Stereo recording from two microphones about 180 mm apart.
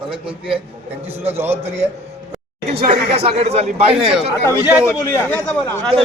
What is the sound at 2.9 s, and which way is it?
A man's voice, 35° right (ahead or behind).